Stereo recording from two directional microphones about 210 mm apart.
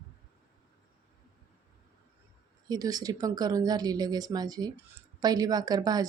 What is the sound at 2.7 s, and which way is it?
Speech, 15° right (ahead or behind).